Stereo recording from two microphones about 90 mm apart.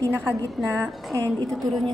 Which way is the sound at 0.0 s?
25° right (ahead or behind).